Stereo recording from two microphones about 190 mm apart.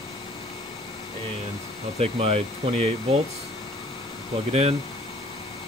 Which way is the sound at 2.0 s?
30° right (ahead or behind).